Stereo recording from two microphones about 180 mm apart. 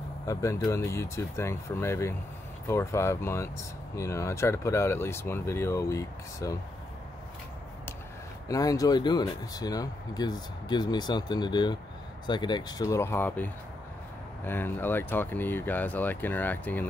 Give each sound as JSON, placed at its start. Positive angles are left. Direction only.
{"t": 0.3, "sound": "speech", "side_deg": 20}
{"t": 8.5, "sound": "speech", "side_deg": 20}